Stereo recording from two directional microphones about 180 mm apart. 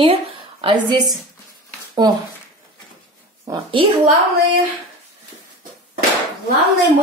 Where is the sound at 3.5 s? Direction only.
15° right (ahead or behind).